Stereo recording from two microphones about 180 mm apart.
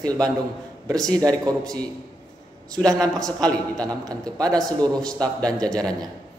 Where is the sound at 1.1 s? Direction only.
20° right (ahead or behind).